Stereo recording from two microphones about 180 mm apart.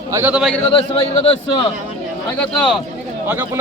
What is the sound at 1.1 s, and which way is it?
Speech, 30° left (ahead or behind).